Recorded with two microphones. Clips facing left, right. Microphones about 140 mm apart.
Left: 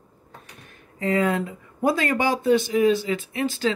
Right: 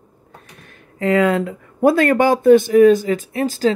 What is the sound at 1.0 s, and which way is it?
Speech, 80° right.